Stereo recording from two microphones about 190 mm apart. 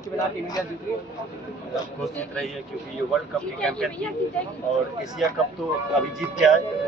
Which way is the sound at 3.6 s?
5° left (ahead or behind).